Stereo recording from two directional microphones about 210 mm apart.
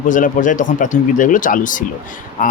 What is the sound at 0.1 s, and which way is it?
Speech, 40° left (ahead or behind).